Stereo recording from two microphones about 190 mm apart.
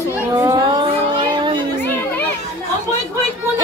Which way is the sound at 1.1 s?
25° right (ahead or behind).